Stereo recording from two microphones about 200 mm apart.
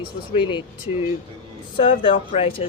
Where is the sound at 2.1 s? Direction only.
40° left (ahead or behind).